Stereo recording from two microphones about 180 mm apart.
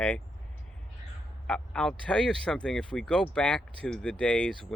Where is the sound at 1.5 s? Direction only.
5° left (ahead or behind).